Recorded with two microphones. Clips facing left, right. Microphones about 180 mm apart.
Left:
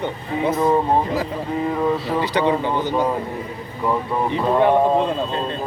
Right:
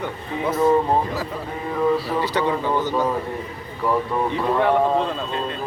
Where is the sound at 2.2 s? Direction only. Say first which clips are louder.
Left 3 dB; 20° left (ahead or behind).